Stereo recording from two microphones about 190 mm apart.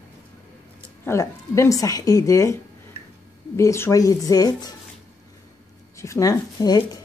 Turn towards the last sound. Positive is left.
turn(degrees=20)  # may be behind; listen again after turning